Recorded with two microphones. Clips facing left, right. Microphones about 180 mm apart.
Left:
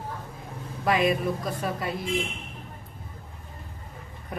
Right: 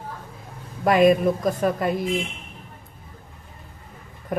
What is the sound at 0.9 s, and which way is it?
Speech, 45° right (ahead or behind).